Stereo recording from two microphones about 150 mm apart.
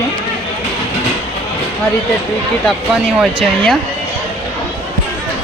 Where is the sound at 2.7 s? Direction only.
5° right (ahead or behind).